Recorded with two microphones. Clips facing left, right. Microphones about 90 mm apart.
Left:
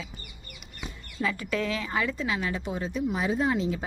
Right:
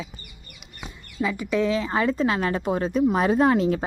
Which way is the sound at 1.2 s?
15° right (ahead or behind).